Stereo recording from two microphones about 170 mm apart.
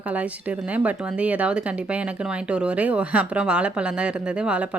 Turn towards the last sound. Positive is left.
turn(degrees=-5)  # may be behind; listen again after turning